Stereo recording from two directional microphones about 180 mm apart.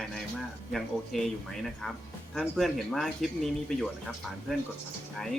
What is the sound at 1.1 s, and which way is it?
Speech, centre (ahead or behind).